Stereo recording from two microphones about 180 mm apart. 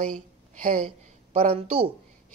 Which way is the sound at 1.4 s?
35° right (ahead or behind).